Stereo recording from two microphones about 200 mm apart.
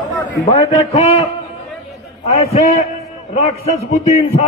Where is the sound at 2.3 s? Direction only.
35° left (ahead or behind).